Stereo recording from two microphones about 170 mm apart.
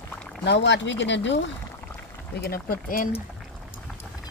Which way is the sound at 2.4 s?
60° left (ahead or behind).